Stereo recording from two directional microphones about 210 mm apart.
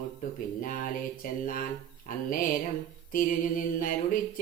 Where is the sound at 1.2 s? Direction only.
40° left (ahead or behind).